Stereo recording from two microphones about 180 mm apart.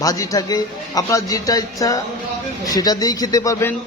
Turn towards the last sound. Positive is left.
turn(degrees=15)  # may be behind; listen again after turning